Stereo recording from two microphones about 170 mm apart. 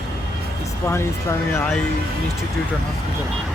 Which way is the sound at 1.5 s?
10° left (ahead or behind).